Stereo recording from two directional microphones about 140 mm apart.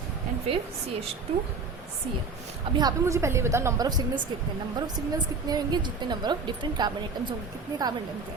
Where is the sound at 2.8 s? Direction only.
25° right (ahead or behind).